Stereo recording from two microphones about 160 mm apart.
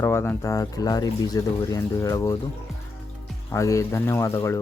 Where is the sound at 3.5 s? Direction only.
20° left (ahead or behind).